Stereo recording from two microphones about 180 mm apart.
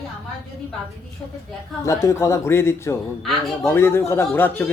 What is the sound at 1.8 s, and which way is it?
Speech, 15° left (ahead or behind).